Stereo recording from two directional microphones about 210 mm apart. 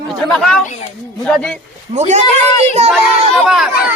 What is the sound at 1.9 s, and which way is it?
Speech, 35° right (ahead or behind).